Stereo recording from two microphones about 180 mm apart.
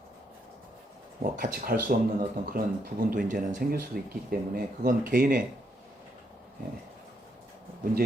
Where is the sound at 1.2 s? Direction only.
50° right (ahead or behind).